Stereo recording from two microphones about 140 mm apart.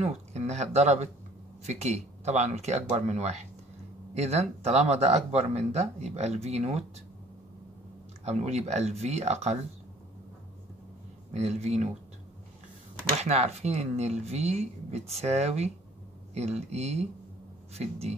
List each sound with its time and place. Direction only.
0.0 s speech: 50° right (ahead or behind)
8.3 s speech: 50° right (ahead or behind)
11.3 s speech: 50° right (ahead or behind)
13.2 s speech: 50° right (ahead or behind)